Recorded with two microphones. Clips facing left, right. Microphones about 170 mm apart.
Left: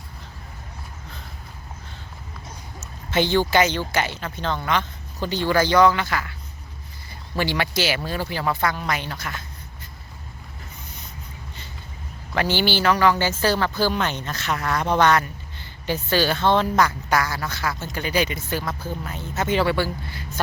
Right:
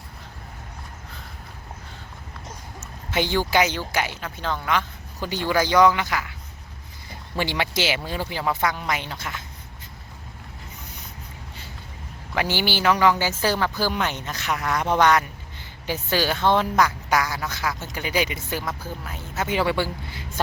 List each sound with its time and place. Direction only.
3.1 s speech: 10° right (ahead or behind)
7.3 s speech: 20° right (ahead or behind)
12.3 s speech: 10° right (ahead or behind)